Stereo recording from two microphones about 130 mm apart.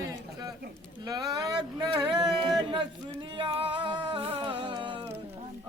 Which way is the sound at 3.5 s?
40° right (ahead or behind).